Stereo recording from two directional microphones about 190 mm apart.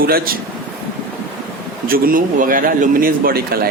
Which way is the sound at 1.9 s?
50° right (ahead or behind).